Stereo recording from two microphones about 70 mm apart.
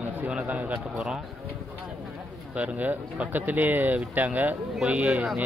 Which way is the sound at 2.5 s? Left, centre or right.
Centre.